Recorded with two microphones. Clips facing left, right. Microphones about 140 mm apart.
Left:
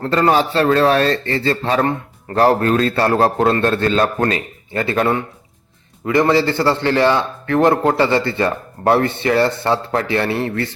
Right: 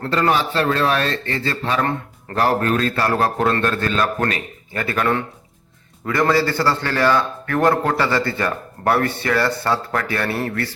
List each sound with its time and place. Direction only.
0.0 s a man's voice: 35° left (ahead or behind)